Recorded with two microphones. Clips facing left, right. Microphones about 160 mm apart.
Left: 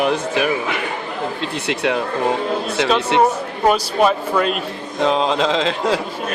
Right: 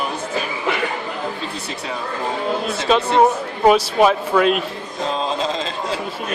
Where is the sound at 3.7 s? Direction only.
Centre (ahead or behind).